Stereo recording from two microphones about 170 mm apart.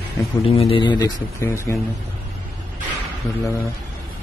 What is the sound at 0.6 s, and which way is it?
Speech, 30° left (ahead or behind).